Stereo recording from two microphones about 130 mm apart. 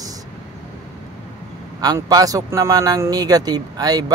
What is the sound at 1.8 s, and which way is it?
A man's voice, 30° right (ahead or behind).